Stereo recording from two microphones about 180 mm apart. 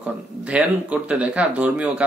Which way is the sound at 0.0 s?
5° right (ahead or behind).